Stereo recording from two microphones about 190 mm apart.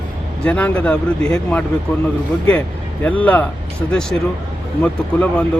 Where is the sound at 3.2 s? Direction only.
10° left (ahead or behind).